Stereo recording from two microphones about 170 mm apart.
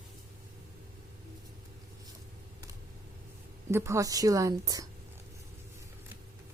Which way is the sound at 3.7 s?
15° right (ahead or behind).